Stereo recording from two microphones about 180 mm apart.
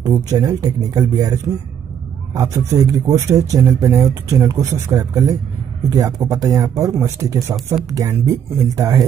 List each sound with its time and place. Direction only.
0.0 s speech: 20° right (ahead or behind)